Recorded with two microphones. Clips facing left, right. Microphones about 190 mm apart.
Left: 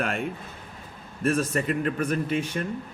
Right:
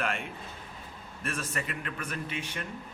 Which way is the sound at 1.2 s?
40° left (ahead or behind).